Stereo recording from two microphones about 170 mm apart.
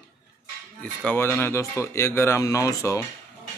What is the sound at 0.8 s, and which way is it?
Speech, 10° left (ahead or behind).